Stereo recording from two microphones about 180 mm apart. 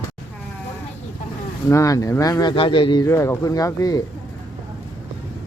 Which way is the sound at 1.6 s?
15° left (ahead or behind).